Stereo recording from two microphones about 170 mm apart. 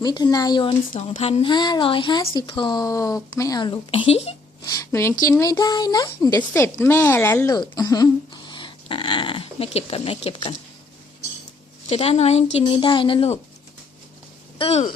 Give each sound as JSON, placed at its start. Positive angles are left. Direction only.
{"t": 0.0, "sound": "speech", "side_deg": 25}
{"t": 4.6, "sound": "speech", "side_deg": 20}
{"t": 11.9, "sound": "a woman's voice", "side_deg": 35}
{"t": 14.6, "sound": "a woman's voice", "side_deg": 40}